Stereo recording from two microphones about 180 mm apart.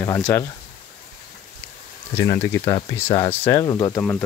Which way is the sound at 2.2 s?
15° left (ahead or behind).